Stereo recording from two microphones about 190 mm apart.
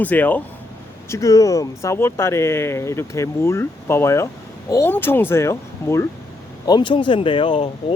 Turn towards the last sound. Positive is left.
turn(degrees=30)  # may be behind; listen again after turning